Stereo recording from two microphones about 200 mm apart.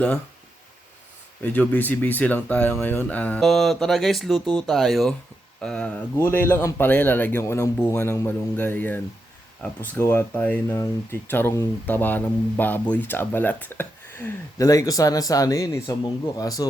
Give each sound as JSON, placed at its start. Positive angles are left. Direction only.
{"t": 1.4, "sound": "speech", "side_deg": 10}